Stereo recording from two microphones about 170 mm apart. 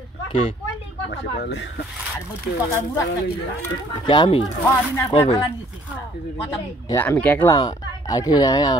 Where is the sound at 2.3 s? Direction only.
15° left (ahead or behind).